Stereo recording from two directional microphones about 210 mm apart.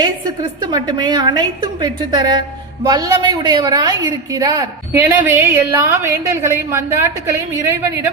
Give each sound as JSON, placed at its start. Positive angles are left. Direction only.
{"t": 0.0, "sound": "a woman's voice", "side_deg": -20}